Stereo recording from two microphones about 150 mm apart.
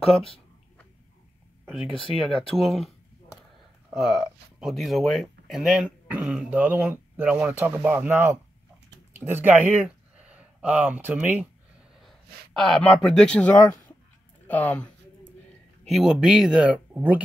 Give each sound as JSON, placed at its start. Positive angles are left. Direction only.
{"t": 1.9, "sound": "speech", "side_deg": 35}
{"t": 2.1, "sound": "speech", "side_deg": 0}
{"t": 3.9, "sound": "speech", "side_deg": 0}
{"t": 12.0, "sound": "speech", "side_deg": 0}
{"t": 15.8, "sound": "speech", "side_deg": 0}